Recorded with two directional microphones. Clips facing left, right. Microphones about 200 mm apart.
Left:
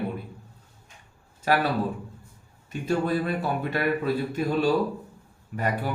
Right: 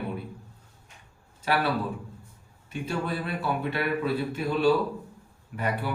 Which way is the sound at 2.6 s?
45° left (ahead or behind).